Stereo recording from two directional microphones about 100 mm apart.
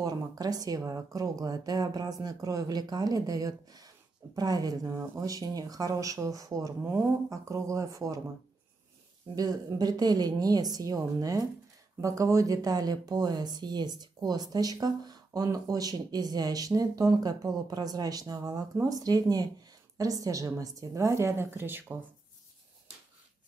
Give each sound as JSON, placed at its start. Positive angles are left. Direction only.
{"t": 0.0, "sound": "speech", "side_deg": -40}
{"t": 4.9, "sound": "speech", "side_deg": -30}
{"t": 9.3, "sound": "speech", "side_deg": -40}